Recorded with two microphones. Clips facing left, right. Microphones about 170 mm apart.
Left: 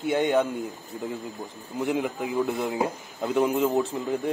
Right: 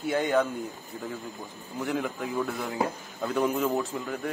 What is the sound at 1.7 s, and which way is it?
A man's voice, 15° left (ahead or behind).